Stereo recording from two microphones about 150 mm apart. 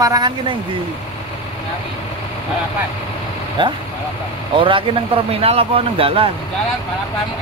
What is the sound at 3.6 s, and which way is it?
A man's voice, 30° right (ahead or behind).